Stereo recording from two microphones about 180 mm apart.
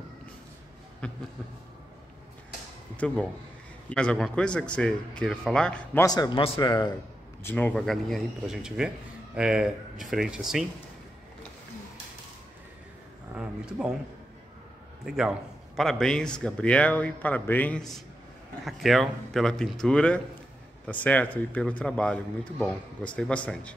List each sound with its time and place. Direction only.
1.0 s a man's voice: 5° left (ahead or behind)
3.0 s a man's voice: 5° left (ahead or behind)
6.0 s a man's voice: 20° left (ahead or behind)
7.4 s a man's voice: 10° left (ahead or behind)
13.3 s a sound: 5° right (ahead or behind)
15.0 s a man's voice: 5° right (ahead or behind)